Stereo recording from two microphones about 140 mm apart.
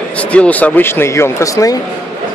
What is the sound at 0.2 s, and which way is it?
Speech, 10° left (ahead or behind).